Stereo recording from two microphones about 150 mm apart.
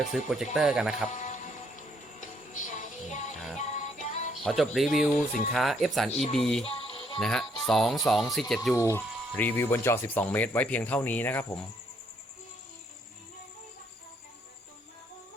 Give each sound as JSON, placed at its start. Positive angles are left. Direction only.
{"t": 0.1, "sound": "speech", "side_deg": -5}
{"t": 1.1, "sound": "music", "side_deg": 55}
{"t": 4.4, "sound": "speech", "side_deg": 0}
{"t": 5.1, "sound": "speech", "side_deg": 60}
{"t": 5.5, "sound": "speech", "side_deg": 0}
{"t": 6.7, "sound": "music", "side_deg": 40}
{"t": 7.2, "sound": "speech", "side_deg": 5}
{"t": 8.7, "sound": "speech", "side_deg": 20}